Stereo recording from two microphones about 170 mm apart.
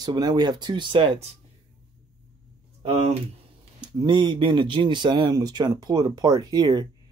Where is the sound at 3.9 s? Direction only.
30° right (ahead or behind).